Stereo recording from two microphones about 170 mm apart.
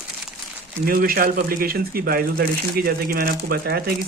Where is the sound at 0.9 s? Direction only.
60° right (ahead or behind).